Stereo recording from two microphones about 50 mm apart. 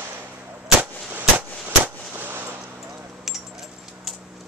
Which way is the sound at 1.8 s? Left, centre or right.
Right.